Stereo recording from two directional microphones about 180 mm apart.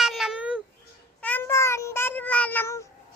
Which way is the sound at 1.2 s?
10° left (ahead or behind).